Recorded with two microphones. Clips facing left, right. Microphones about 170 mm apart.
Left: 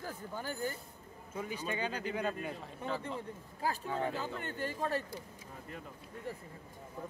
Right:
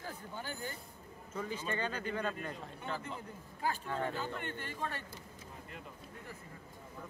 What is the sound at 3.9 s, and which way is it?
Speech, 5° left (ahead or behind).